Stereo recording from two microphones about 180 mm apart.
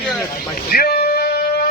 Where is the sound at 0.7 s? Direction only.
55° left (ahead or behind).